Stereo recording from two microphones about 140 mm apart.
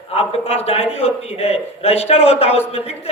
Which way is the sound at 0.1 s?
45° left (ahead or behind).